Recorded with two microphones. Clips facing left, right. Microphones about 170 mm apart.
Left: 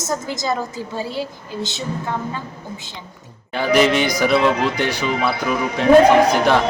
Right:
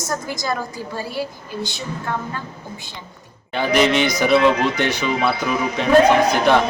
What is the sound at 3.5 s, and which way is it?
A man's voice, 20° right (ahead or behind).